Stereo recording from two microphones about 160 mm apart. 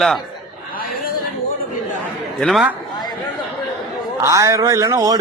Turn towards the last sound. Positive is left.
turn(degrees=-25)  # may be behind; listen again after turning